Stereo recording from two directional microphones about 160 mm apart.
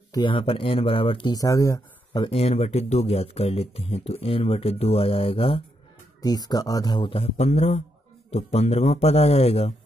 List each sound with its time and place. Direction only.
0.1 s speech: 30° left (ahead or behind)
2.2 s speech: 40° left (ahead or behind)
6.2 s speech: 25° left (ahead or behind); by 9.8 s 40° left (ahead or behind)